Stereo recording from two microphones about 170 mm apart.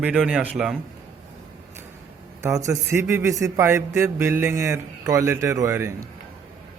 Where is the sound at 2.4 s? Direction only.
15° right (ahead or behind).